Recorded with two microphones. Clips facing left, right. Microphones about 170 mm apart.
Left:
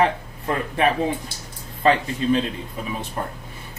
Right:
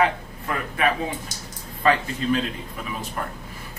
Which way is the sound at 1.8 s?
30° left (ahead or behind).